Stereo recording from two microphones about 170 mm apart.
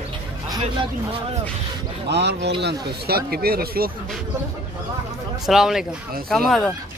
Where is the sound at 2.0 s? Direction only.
85° right.